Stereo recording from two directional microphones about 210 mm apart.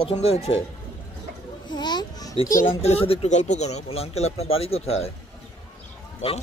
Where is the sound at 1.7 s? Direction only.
20° left (ahead or behind).